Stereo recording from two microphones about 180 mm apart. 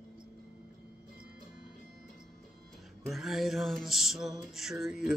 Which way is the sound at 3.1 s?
Centre (ahead or behind).